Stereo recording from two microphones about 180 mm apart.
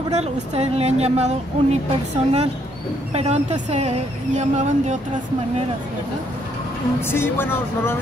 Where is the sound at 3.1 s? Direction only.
35° right (ahead or behind).